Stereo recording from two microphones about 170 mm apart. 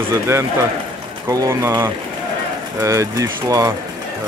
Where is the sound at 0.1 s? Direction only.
15° right (ahead or behind).